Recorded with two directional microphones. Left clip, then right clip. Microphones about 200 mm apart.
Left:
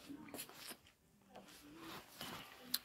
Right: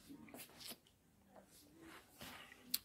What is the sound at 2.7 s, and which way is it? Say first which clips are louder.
Tick-tock: left 2 dB; 35° right (ahead or behind).